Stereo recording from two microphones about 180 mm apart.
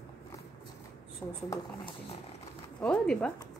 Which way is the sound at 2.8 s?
5° left (ahead or behind).